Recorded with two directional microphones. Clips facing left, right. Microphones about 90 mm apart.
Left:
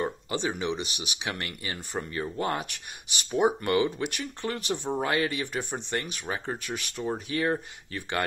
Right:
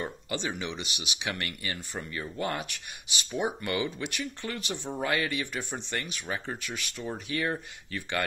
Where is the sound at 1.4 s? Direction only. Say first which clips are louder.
Even; 25° left (ahead or behind); by 4.9 s 45° left (ahead or behind).